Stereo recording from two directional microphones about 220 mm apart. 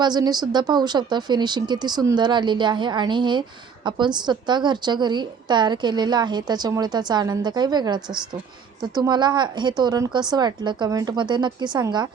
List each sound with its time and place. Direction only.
0.0 s a woman's voice: 20° right (ahead or behind)